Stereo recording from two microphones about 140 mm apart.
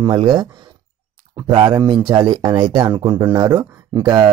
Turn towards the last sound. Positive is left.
turn(degrees=-30)  # may be behind; listen again after turning